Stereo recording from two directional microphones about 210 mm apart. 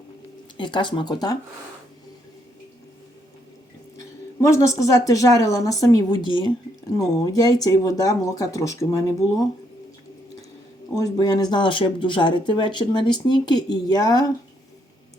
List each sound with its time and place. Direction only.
0.5 s speech: 20° left (ahead or behind)
4.4 s speech: 15° left (ahead or behind)
10.9 s speech: 15° left (ahead or behind)